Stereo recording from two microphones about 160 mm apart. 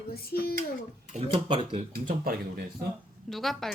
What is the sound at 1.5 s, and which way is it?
Speech, 30° right (ahead or behind).